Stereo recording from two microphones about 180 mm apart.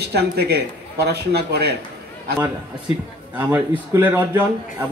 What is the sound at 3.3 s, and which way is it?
A man's voice, 10° right (ahead or behind).